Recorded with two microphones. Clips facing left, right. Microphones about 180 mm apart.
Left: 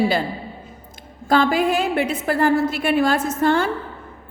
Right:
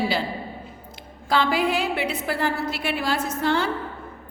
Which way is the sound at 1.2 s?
45° left (ahead or behind).